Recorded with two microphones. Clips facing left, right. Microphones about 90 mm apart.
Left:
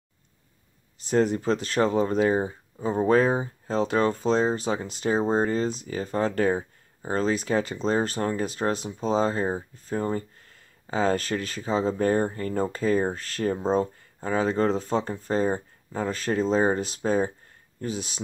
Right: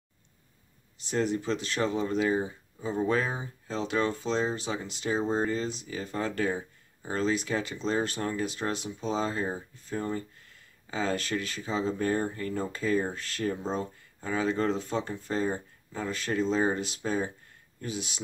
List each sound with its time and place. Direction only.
0.9 s speech: 40° left (ahead or behind)